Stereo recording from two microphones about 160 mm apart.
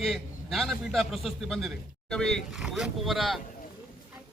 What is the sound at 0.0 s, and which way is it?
A man's voice, centre (ahead or behind).